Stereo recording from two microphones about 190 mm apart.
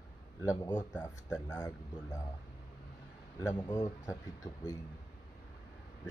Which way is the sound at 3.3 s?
20° left (ahead or behind).